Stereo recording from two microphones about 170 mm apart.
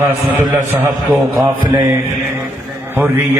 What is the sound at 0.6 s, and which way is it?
Speech, 15° right (ahead or behind).